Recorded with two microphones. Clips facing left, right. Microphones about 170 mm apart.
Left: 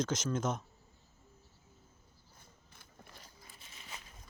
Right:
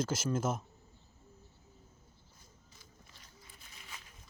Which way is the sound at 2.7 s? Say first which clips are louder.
Left 6 dB; 60° left (ahead or behind).